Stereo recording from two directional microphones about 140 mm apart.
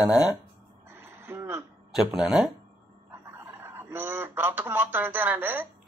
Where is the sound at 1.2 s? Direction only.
15° right (ahead or behind).